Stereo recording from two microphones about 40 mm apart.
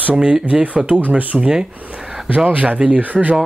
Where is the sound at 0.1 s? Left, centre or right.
Right.